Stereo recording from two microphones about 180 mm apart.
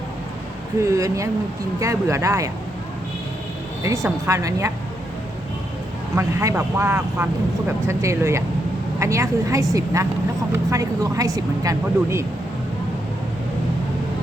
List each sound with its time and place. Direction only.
0.8 s speech: 15° right (ahead or behind)
3.8 s speech: 15° right (ahead or behind)
6.1 s speech: 15° right (ahead or behind)